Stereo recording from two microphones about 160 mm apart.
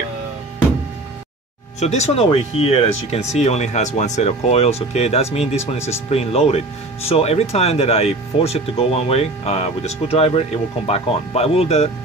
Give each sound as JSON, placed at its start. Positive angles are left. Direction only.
{"t": 1.8, "sound": "speech", "side_deg": 45}